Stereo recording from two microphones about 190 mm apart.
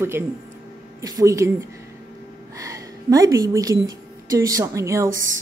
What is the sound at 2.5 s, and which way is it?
A woman's voice, 15° right (ahead or behind).